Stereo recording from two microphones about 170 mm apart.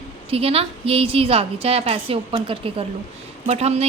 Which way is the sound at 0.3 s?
35° right (ahead or behind).